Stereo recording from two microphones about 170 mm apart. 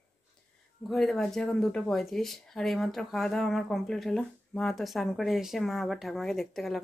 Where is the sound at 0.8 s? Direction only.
Centre (ahead or behind).